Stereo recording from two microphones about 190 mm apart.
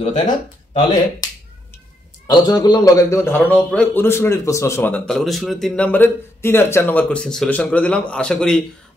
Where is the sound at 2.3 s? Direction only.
20° left (ahead or behind).